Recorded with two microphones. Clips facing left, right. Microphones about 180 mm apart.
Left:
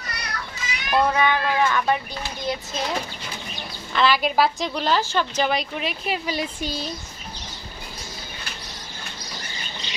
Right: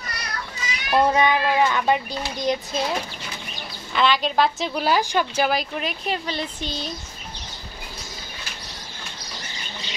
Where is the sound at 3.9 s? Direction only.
5° left (ahead or behind).